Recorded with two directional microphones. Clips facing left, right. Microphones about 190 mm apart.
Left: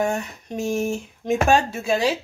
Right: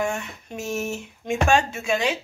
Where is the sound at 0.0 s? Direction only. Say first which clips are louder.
Left 3 dB; 35° left (ahead or behind).